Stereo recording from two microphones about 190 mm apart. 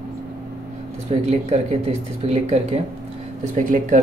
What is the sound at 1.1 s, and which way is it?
Speech, 35° right (ahead or behind).